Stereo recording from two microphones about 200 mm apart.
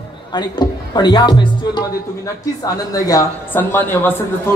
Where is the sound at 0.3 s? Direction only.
20° left (ahead or behind).